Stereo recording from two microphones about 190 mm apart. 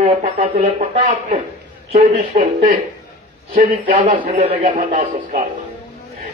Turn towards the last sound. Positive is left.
turn(degrees=-40)  # may be behind; listen again after turning